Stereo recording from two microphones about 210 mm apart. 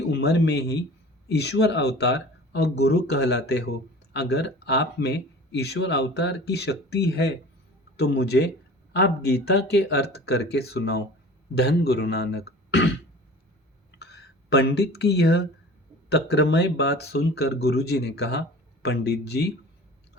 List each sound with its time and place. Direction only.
0.1 s speech: 55° left (ahead or behind)
14.0 s speech: 50° left (ahead or behind)